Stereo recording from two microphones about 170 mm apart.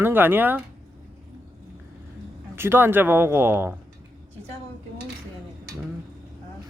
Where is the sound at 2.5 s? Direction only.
15° right (ahead or behind).